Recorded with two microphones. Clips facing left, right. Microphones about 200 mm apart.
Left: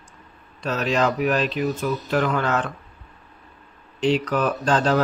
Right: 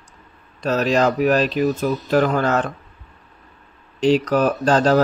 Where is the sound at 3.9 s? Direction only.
40° right (ahead or behind).